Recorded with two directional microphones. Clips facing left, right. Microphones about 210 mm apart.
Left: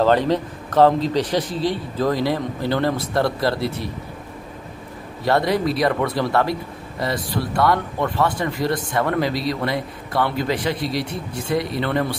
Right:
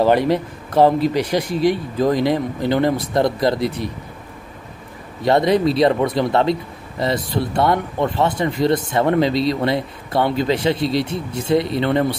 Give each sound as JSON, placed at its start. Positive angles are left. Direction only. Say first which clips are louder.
{"t": 0.0, "sound": "speech", "louder": "right 2 dB", "side_deg": -10}
{"t": 5.2, "sound": "speech", "louder": "right 4 dB", "side_deg": -20}